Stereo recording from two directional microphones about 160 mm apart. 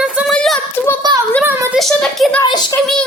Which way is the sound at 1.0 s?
25° right (ahead or behind).